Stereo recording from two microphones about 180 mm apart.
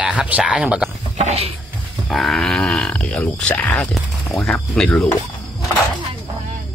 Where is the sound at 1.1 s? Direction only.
35° right (ahead or behind).